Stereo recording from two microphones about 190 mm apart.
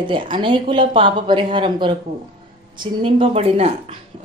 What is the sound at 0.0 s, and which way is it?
A woman's voice, 25° right (ahead or behind).